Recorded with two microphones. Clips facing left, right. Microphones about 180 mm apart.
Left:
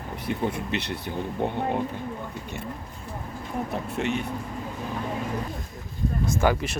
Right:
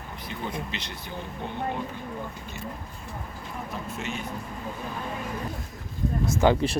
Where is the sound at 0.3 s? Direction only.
55° left (ahead or behind).